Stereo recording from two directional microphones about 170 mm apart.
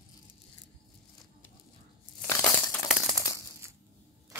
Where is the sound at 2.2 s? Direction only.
15° left (ahead or behind).